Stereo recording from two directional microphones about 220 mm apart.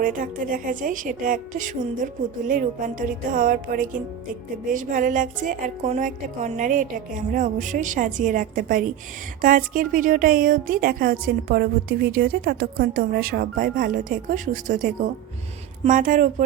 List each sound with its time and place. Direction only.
0.0 s a woman's voice: 35° right (ahead or behind)